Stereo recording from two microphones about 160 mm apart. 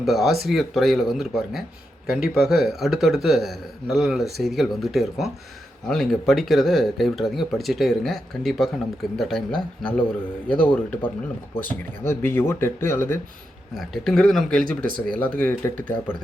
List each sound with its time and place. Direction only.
0.0 s a man's voice: centre (ahead or behind); by 13.1 s 15° left (ahead or behind)
13.7 s a man's voice: centre (ahead or behind)
14.6 s speech: 60° right (ahead or behind)
15.2 s a man's voice: 10° left (ahead or behind)